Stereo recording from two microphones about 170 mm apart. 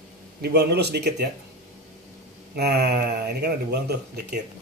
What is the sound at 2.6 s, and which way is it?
Speech, 75° right (ahead or behind).